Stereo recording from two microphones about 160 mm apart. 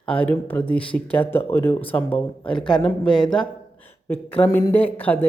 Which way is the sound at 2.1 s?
35° left (ahead or behind).